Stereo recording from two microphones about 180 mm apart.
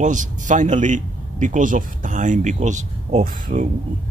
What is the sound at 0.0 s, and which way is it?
A man's voice, 45° right (ahead or behind).